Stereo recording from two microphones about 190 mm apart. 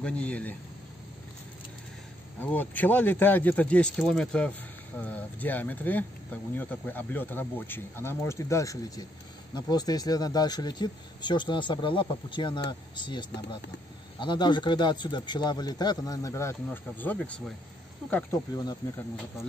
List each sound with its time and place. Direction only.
0.0 s speech: 5° left (ahead or behind)
2.4 s speech: 10° left (ahead or behind)